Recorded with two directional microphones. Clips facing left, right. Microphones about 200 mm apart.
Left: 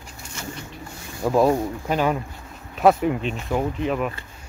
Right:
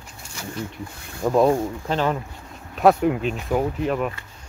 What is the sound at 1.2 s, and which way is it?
Speech, centre (ahead or behind).